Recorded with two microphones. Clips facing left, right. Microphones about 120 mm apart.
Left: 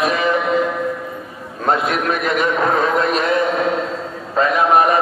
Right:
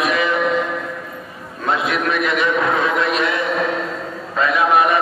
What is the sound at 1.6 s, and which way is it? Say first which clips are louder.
A man's voice: left 2 dB; 45° left (ahead or behind).